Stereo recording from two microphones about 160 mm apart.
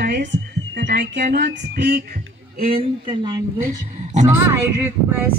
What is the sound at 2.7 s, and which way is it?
Speech, 30° right (ahead or behind).